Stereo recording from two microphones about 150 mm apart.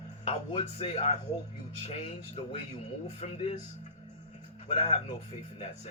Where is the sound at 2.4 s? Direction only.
45° left (ahead or behind).